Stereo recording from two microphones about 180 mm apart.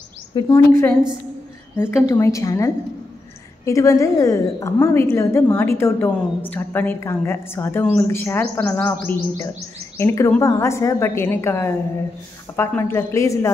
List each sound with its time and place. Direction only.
0.3 s a woman's voice: 15° left (ahead or behind)